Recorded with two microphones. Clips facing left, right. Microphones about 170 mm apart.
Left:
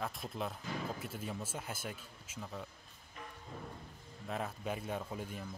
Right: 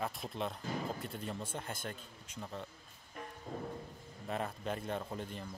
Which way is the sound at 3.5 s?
50° right (ahead or behind).